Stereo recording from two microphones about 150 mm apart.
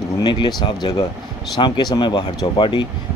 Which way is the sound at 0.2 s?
30° left (ahead or behind).